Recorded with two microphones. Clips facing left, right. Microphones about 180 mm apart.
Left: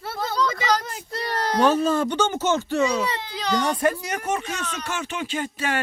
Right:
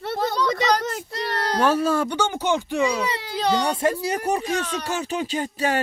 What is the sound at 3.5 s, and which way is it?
Speech, 25° right (ahead or behind).